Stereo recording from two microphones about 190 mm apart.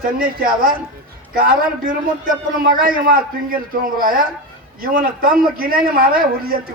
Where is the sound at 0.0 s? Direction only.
50° right (ahead or behind).